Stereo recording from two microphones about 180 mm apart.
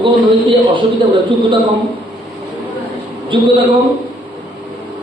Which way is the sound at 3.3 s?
25° right (ahead or behind).